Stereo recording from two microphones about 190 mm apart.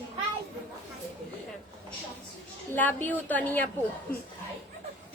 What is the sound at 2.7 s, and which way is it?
Speech, 10° left (ahead or behind).